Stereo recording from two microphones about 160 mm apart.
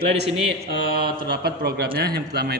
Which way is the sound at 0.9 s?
75° right (ahead or behind).